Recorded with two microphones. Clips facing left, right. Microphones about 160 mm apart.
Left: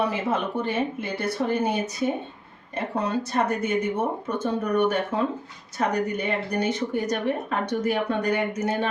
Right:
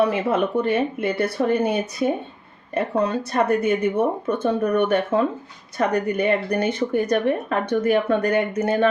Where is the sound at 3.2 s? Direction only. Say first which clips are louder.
Right 5 dB; 60° right (ahead or behind).